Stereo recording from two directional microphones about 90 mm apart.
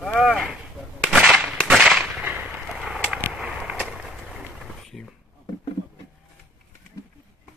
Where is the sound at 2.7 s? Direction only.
5° right (ahead or behind).